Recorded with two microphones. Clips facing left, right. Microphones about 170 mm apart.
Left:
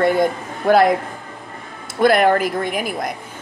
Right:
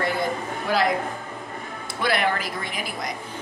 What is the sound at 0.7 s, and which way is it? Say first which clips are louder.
Speech: left 11 dB; 50° left (ahead or behind).